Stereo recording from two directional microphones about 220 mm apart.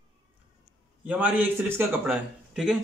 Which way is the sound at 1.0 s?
5° right (ahead or behind).